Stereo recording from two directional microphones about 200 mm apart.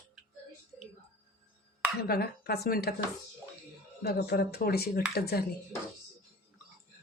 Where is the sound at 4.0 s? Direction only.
50° left (ahead or behind).